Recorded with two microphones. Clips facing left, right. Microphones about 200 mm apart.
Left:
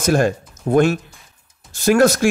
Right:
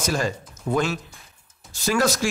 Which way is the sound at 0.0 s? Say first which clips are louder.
Left 8 dB; 55° left (ahead or behind).